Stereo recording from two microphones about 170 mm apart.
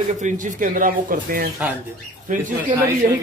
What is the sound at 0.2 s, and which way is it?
Speech, 50° right (ahead or behind).